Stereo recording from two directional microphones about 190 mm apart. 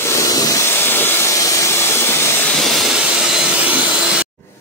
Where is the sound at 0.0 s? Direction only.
15° left (ahead or behind).